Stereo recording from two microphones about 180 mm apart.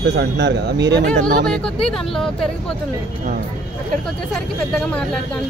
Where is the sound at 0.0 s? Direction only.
70° right (ahead or behind).